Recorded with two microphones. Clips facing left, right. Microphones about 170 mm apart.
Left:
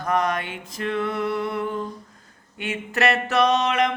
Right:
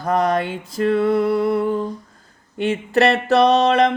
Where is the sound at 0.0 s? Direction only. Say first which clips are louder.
Right 5 dB; 30° right (ahead or behind).